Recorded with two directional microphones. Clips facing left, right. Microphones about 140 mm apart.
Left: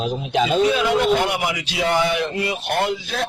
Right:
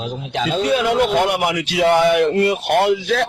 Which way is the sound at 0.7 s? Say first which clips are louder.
Right 2 dB; 55° right (ahead or behind).